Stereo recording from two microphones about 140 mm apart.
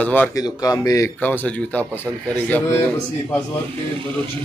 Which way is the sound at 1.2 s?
10° left (ahead or behind).